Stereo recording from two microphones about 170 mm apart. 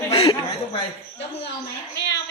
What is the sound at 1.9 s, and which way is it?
Speech, 90° left.